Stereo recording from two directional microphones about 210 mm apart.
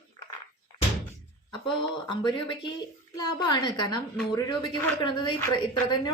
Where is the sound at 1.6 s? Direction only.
20° left (ahead or behind).